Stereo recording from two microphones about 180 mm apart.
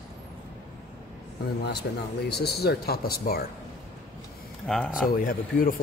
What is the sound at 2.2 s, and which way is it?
Speech, 65° left (ahead or behind).